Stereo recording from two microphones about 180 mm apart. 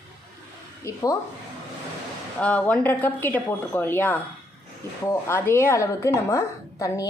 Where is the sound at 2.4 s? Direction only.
5° left (ahead or behind).